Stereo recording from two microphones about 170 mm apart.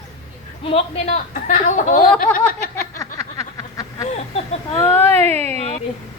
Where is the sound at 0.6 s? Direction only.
35° left (ahead or behind).